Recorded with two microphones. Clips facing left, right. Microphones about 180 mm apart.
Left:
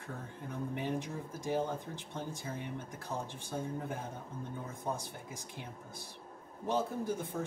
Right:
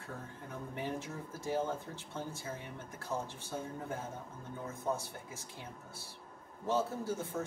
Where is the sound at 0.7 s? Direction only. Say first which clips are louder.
Left 2 dB; 15° left (ahead or behind).